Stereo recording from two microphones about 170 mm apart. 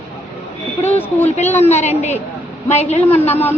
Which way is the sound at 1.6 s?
40° left (ahead or behind).